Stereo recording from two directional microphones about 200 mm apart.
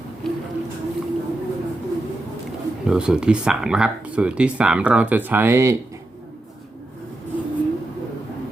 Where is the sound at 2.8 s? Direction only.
5° right (ahead or behind).